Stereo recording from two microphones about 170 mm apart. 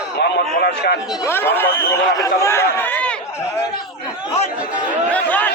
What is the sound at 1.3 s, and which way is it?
Speech, 15° left (ahead or behind).